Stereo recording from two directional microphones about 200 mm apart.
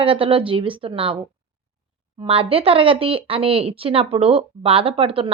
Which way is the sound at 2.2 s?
25° right (ahead or behind).